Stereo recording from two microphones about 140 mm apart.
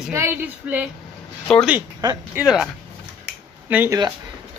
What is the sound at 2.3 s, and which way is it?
Speech, 10° right (ahead or behind).